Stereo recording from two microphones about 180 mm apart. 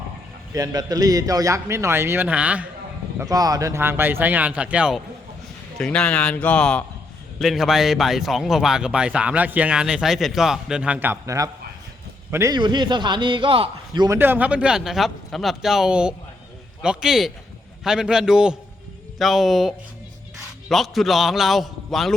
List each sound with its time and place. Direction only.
0.5 s a man's voice: 20° right (ahead or behind)
3.2 s a man's voice: 20° right (ahead or behind)
5.8 s a man's voice: 5° left (ahead or behind); by 14.2 s 25° right (ahead or behind)
14.2 s speech: 10° right (ahead or behind)